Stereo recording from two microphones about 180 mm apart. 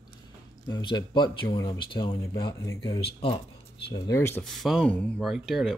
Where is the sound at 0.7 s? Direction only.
25° left (ahead or behind).